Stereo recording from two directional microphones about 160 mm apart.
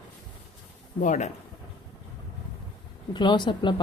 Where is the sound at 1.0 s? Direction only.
50° left (ahead or behind).